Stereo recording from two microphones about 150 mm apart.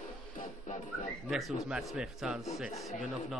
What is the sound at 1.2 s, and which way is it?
A man's voice, centre (ahead or behind).